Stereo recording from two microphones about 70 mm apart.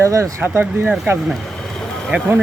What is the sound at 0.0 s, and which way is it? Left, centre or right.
Speech, right.